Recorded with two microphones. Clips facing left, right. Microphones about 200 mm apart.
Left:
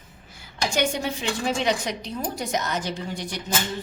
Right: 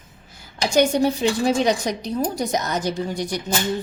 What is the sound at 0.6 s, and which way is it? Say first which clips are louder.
A woman's voice: right 7 dB; 40° right (ahead or behind).